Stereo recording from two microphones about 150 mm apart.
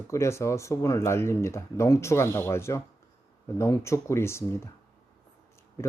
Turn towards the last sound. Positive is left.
turn(degrees=20)  # may be behind; listen again after turning